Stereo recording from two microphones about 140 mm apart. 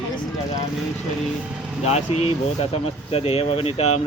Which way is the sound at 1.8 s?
50° left (ahead or behind).